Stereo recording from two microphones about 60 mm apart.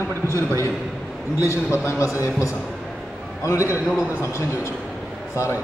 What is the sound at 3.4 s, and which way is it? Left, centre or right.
A man's voice, left.